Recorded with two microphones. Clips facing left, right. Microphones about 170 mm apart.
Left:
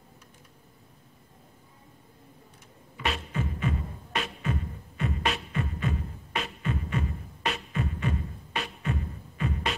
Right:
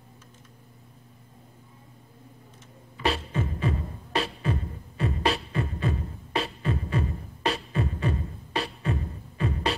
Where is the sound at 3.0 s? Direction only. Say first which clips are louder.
Right 4 dB; 35° right (ahead or behind).